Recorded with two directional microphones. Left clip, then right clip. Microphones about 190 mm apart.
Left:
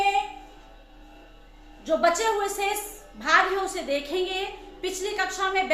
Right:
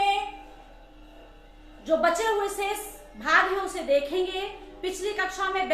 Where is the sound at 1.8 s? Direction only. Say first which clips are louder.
Left 1 dB; 15° left (ahead or behind).